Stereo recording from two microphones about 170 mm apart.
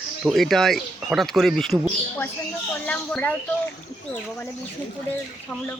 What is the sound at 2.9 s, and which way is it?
Speech, 10° left (ahead or behind).